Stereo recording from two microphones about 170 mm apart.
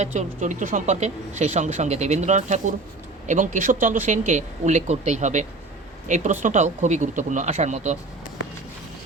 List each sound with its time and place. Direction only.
0.0 s speech: 45° right (ahead or behind)